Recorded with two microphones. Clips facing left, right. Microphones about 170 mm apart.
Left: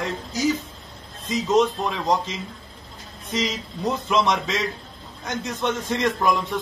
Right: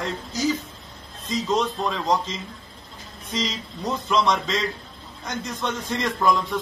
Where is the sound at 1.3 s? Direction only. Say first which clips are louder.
Left 4 dB; 20° left (ahead or behind).